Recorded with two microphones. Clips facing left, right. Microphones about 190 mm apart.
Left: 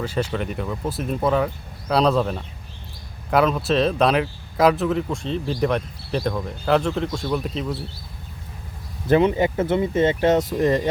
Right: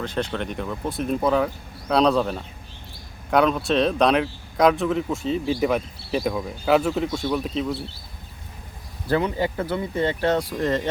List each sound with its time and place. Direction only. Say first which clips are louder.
0.0 s speech: left 2 dB; 5° left (ahead or behind)
9.0 s speech: left 5 dB; 20° left (ahead or behind)